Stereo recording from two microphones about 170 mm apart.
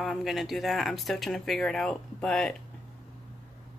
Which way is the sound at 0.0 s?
Centre (ahead or behind).